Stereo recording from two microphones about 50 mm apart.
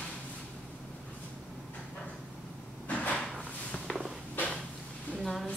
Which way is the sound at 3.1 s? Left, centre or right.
Centre.